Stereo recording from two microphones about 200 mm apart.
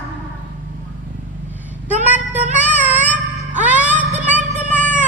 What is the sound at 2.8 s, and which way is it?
Music, 10° right (ahead or behind).